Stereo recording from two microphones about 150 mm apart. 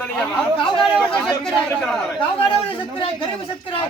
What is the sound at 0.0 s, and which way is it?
Speech, 10° left (ahead or behind).